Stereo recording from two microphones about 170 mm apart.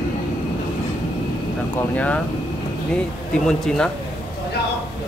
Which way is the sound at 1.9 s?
10° left (ahead or behind).